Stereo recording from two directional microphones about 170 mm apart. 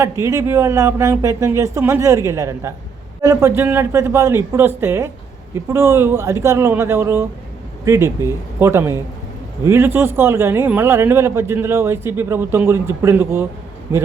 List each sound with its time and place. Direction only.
0.0 s speech: 15° right (ahead or behind)